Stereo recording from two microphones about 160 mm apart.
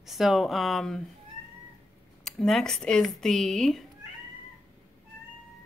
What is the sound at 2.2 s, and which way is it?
A woman's voice, 5° left (ahead or behind).